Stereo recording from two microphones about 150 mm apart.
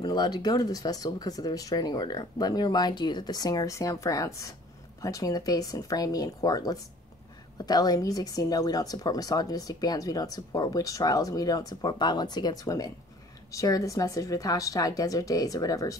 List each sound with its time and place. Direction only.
0.0 s speech: 30° left (ahead or behind)